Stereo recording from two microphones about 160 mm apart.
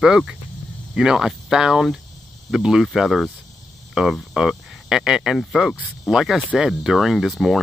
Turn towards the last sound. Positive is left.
turn(degrees=0)  # may be behind; listen again after turning